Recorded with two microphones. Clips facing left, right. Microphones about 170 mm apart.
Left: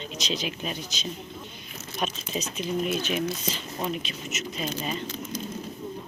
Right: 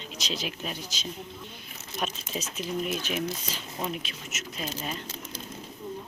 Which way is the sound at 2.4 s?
5° right (ahead or behind).